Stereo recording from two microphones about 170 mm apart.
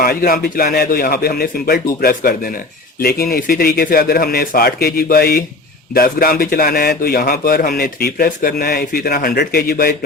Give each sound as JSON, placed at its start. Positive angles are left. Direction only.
{"t": 0.0, "sound": "speech", "side_deg": 60}